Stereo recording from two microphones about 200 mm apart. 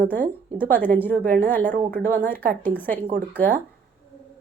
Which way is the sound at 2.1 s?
10° left (ahead or behind).